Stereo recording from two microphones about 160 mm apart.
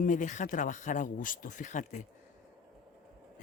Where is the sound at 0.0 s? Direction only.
55° left (ahead or behind).